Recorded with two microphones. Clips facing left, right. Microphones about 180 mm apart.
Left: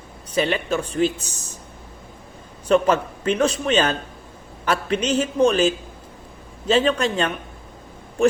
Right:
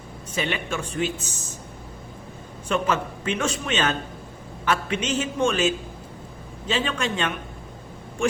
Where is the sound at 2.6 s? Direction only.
40° left (ahead or behind).